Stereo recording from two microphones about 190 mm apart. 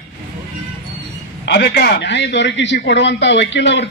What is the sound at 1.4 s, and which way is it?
A man's voice, 65° left (ahead or behind).